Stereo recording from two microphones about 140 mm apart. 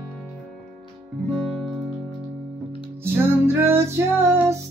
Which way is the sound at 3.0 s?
15° right (ahead or behind).